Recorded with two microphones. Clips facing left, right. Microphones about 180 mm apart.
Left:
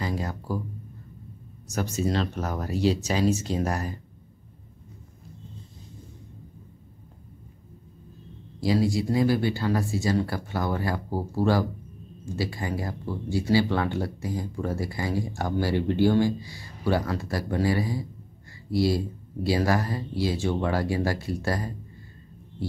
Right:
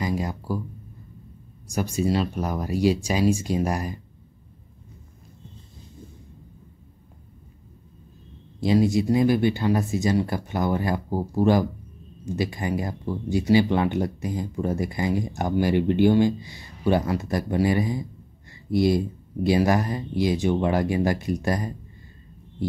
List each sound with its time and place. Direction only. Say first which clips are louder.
0.0 s a sound: right 3 dB; 15° right (ahead or behind)
1.7 s speech: right 3 dB; 10° right (ahead or behind)
8.5 s speech: right 4 dB; 20° right (ahead or behind)